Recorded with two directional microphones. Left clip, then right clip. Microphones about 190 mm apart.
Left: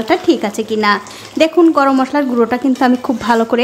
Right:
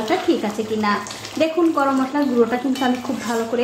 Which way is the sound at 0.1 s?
40° left (ahead or behind).